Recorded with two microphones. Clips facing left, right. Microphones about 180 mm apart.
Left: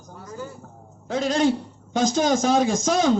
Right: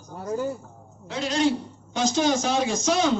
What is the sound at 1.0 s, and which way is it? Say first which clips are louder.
A man's voice: left 3 dB; 50° left (ahead or behind).